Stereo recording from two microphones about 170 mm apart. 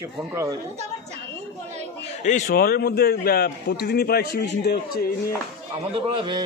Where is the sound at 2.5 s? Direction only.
65° left (ahead or behind).